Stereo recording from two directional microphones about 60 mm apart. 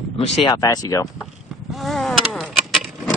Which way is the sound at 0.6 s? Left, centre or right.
Left.